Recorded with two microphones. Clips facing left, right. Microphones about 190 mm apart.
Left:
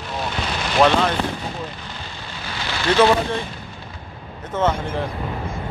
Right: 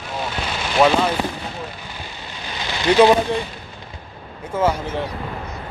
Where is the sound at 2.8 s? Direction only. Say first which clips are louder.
Right 3 dB; 15° right (ahead or behind).